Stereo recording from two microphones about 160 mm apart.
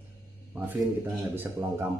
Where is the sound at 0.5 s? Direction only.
10° right (ahead or behind).